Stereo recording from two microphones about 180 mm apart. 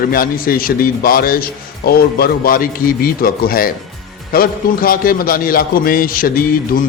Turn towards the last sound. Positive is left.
turn(degrees=50)  # may be behind; listen again after turning